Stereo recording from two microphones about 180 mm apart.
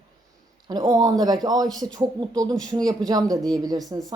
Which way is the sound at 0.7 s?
20° right (ahead or behind).